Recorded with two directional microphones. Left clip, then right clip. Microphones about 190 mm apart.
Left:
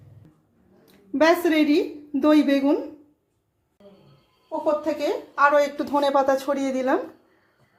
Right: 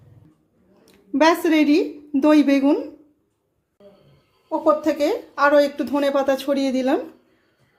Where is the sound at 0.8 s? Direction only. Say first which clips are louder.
Right 2 dB; 20° right (ahead or behind).